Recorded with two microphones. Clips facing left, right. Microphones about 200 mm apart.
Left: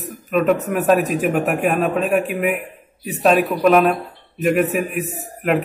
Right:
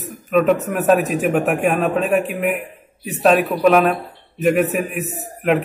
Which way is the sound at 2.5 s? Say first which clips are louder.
Right 1 dB; 45° right (ahead or behind).